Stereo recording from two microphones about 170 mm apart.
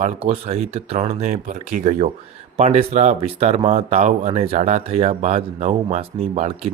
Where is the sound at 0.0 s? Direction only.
35° right (ahead or behind).